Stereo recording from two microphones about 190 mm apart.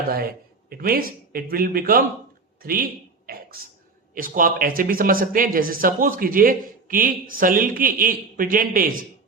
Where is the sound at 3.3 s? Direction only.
50° right (ahead or behind).